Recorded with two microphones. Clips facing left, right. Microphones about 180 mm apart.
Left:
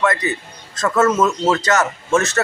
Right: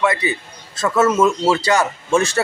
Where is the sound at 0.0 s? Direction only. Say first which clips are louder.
Even; 10° right (ahead or behind).